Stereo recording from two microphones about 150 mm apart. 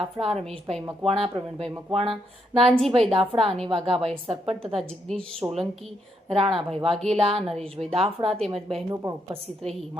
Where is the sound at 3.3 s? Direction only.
35° right (ahead or behind).